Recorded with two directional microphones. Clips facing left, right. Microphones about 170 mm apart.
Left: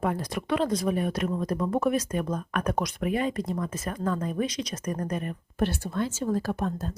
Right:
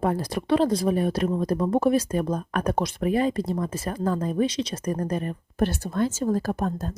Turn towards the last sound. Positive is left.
turn(degrees=-40)  # may be behind; listen again after turning